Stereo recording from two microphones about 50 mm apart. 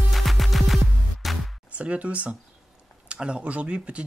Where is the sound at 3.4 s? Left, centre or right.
Right.